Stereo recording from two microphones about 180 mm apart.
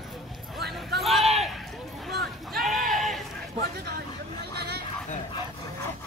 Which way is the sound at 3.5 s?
60° right (ahead or behind).